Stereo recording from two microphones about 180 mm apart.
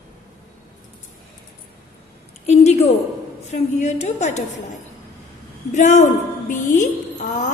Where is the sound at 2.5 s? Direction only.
35° left (ahead or behind).